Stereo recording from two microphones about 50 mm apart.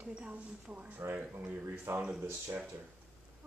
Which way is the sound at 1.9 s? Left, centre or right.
Right.